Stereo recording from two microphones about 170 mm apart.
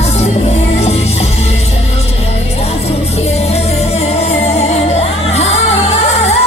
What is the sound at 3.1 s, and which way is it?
Music, 40° left (ahead or behind).